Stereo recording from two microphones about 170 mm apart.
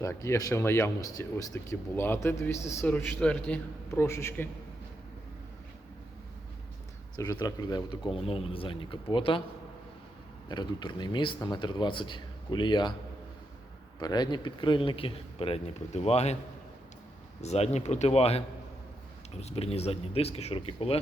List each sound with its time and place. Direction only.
0.0 s speech: 15° left (ahead or behind)
7.2 s speech: 20° left (ahead or behind)
10.5 s speech: 25° left (ahead or behind)
14.0 s speech: 25° left (ahead or behind); by 16.4 s 40° left (ahead or behind)
17.4 s speech: 40° left (ahead or behind)